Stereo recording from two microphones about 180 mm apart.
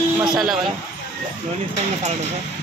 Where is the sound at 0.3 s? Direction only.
Centre (ahead or behind).